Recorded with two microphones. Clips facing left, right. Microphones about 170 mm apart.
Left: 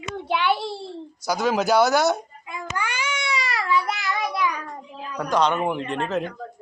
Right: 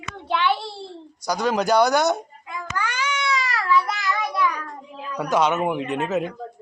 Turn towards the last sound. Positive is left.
turn(degrees=-5)  # may be behind; listen again after turning